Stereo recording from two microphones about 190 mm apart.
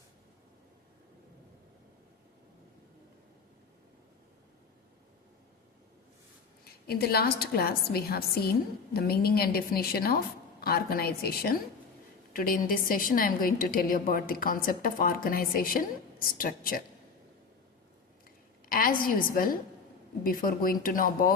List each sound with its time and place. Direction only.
6.8 s a woman's voice: 55° left (ahead or behind)
18.7 s a woman's voice: 50° left (ahead or behind)